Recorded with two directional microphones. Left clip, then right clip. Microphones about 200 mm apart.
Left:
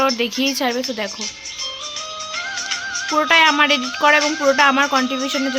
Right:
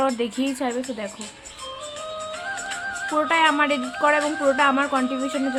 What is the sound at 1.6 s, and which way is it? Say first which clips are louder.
Music: left 5 dB; 30° right (ahead or behind).